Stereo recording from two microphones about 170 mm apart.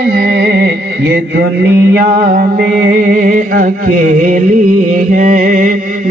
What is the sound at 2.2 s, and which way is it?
Music, 50° right (ahead or behind).